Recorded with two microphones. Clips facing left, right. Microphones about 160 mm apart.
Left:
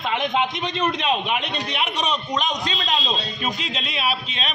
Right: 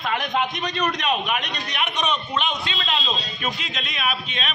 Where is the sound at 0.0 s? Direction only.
20° left (ahead or behind).